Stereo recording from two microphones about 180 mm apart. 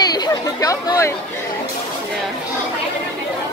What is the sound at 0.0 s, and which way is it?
Chatter, 20° left (ahead or behind).